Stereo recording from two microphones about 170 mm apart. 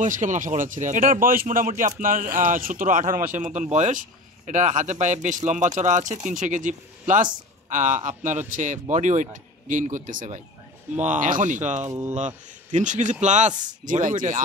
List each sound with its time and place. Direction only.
0.0 s a man's voice: 45° right (ahead or behind)
11.8 s speech: 15° right (ahead or behind)
12.7 s a man's voice: 45° right (ahead or behind)